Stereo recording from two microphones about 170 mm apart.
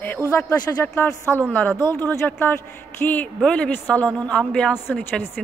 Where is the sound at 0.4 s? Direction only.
15° left (ahead or behind).